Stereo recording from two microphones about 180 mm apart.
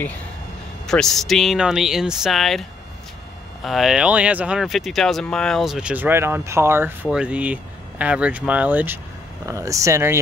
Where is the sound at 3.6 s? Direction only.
Centre (ahead or behind).